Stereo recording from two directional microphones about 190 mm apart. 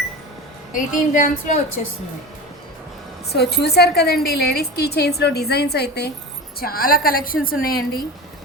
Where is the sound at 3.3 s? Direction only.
60° left (ahead or behind).